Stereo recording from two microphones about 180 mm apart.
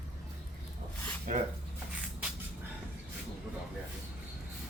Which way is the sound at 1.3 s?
45° right (ahead or behind).